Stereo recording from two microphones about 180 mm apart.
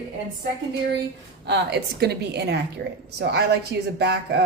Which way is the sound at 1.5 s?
70° right (ahead or behind).